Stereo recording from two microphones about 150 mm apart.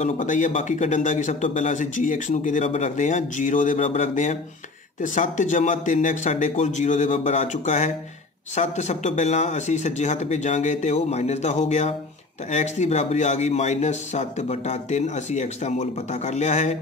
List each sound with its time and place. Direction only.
0.0 s a man's voice: 55° left (ahead or behind)